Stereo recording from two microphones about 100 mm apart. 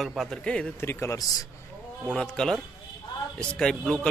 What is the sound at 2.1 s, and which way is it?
Speech, 5° left (ahead or behind).